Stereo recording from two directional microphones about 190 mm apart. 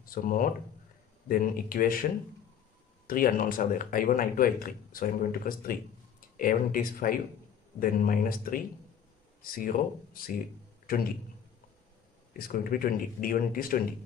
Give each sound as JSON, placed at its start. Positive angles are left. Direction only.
{"t": 0.0, "sound": "speech", "side_deg": 45}
{"t": 3.1, "sound": "speech", "side_deg": 45}
{"t": 12.4, "sound": "speech", "side_deg": 50}